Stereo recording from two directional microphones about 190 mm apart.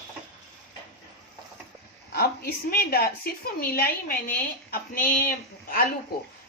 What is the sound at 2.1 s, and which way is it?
Speech, 50° left (ahead or behind).